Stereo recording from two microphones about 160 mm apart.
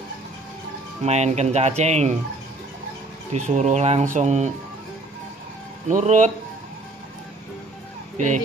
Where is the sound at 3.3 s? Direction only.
45° right (ahead or behind).